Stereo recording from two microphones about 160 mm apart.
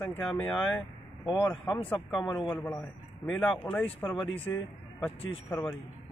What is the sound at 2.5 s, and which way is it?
Speech, 10° left (ahead or behind).